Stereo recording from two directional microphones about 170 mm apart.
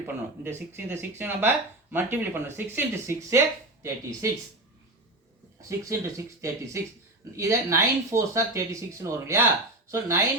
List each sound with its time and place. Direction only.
0.0 s speech: 15° right (ahead or behind)
5.6 s speech: 20° right (ahead or behind)